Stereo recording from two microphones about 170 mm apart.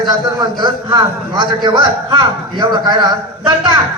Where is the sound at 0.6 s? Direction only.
25° right (ahead or behind).